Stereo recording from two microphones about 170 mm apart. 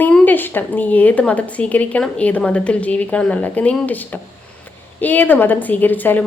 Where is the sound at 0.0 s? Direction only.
10° left (ahead or behind).